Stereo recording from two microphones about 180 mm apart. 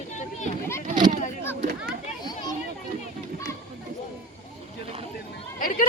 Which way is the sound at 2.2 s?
20° left (ahead or behind).